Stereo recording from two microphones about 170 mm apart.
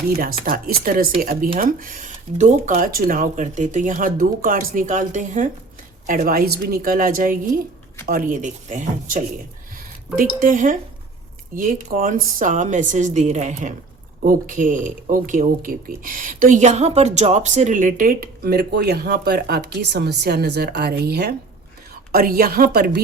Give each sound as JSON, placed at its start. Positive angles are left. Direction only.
{"t": 0.4, "sound": "speech", "side_deg": -60}
{"t": 10.4, "sound": "speech", "side_deg": -50}